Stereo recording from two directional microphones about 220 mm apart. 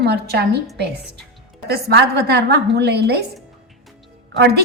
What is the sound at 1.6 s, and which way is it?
A woman's voice, 45° right (ahead or behind).